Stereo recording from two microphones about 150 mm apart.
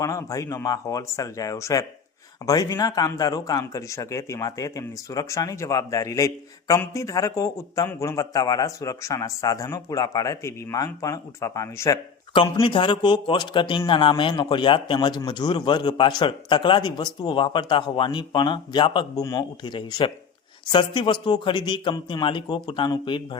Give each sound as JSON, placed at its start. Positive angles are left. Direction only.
{"t": 0.0, "sound": "speech", "side_deg": 20}
{"t": 12.3, "sound": "a man's voice", "side_deg": 35}